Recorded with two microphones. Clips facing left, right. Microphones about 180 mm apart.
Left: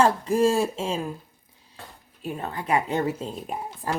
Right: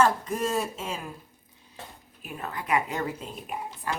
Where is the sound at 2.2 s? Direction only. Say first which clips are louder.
Left 5 dB; 30° left (ahead or behind).